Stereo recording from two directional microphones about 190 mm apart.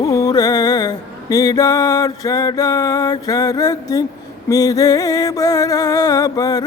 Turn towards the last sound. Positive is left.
turn(degrees=20)  # may be behind; listen again after turning